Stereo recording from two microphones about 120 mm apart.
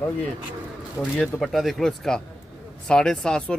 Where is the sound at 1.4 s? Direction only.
Centre (ahead or behind).